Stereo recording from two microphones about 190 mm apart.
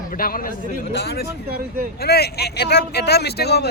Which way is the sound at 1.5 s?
50° right (ahead or behind).